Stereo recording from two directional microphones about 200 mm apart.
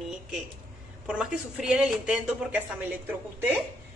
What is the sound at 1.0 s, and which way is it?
Speech, 5° right (ahead or behind).